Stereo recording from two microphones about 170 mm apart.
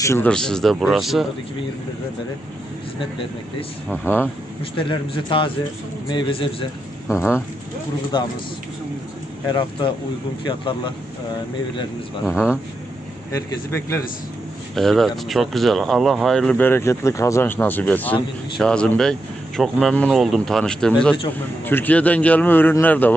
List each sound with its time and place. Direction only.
0.0 s speech: 15° left (ahead or behind)
0.3 s speech: 5° left (ahead or behind)
3.8 s speech: 10° left (ahead or behind)
4.8 s a man's voice: 30° left (ahead or behind)
7.1 s speech: 15° left (ahead or behind)
8.1 s a man's voice: 30° left (ahead or behind)
9.5 s a man's voice: 30° left (ahead or behind)
13.3 s speech: 15° left (ahead or behind)
14.8 s speech: centre (ahead or behind)